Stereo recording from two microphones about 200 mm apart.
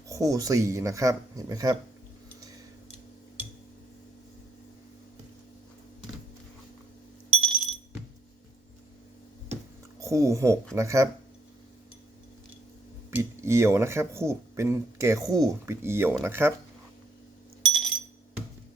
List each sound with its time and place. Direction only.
0.1 s speech: 15° right (ahead or behind)
7.4 s music: centre (ahead or behind)
10.0 s speech: 15° right (ahead or behind)
13.1 s speech: 15° right (ahead or behind)
17.6 s a sound: centre (ahead or behind)